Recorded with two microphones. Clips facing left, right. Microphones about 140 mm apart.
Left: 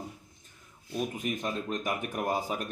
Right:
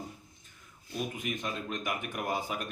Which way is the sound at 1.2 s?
40° left (ahead or behind).